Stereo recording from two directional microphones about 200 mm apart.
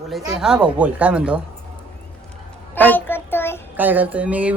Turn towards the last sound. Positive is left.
turn(degrees=-5)  # may be behind; listen again after turning